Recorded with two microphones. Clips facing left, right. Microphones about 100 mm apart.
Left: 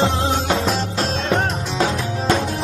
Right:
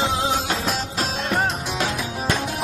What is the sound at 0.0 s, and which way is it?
Music, centre (ahead or behind).